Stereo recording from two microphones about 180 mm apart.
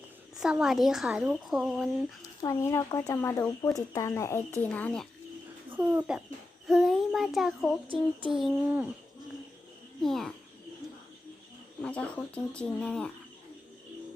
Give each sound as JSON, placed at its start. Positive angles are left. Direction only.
{"t": 0.3, "sound": "speech", "side_deg": -5}
{"t": 2.4, "sound": "speech", "side_deg": 15}
{"t": 5.7, "sound": "a child's voice", "side_deg": -10}
{"t": 10.0, "sound": "speech", "side_deg": 0}
{"t": 11.8, "sound": "speech", "side_deg": 5}